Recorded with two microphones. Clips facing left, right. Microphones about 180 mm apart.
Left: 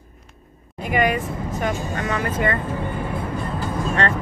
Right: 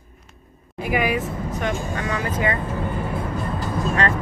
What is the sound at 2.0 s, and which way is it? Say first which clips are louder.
Speech: left 3 dB; 50° left (ahead or behind).